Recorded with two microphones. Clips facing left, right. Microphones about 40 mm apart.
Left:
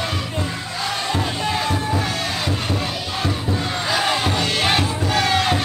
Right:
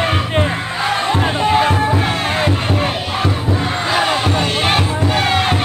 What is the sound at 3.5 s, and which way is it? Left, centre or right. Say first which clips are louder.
Music: right 4 dB; right.